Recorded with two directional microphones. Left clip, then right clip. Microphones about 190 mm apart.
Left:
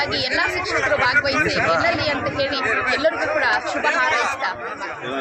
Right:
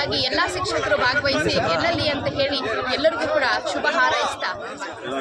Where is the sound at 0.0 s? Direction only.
Centre (ahead or behind).